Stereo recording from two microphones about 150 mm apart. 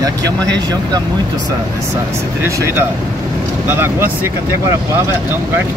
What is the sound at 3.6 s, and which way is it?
Speech, 15° right (ahead or behind).